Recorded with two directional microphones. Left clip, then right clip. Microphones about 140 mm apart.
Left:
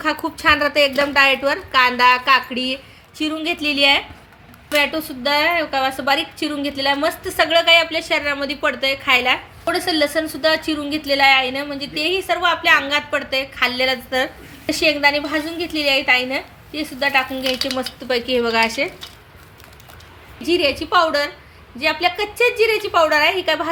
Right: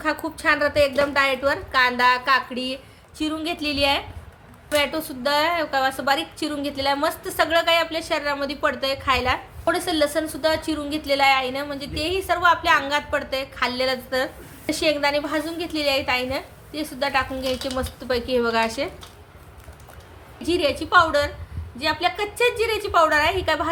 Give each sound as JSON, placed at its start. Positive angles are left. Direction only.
{"t": 0.0, "sound": "a woman's voice", "side_deg": 25}
{"t": 20.4, "sound": "a woman's voice", "side_deg": 25}